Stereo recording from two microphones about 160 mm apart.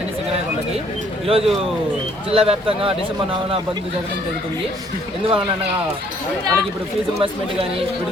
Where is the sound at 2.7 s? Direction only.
35° right (ahead or behind).